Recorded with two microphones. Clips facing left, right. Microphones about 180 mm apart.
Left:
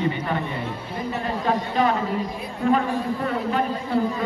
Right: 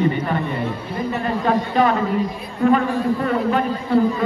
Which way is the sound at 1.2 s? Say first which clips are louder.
Right 4 dB; 65° right (ahead or behind).